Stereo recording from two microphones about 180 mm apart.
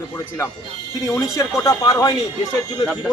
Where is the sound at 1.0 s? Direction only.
15° left (ahead or behind).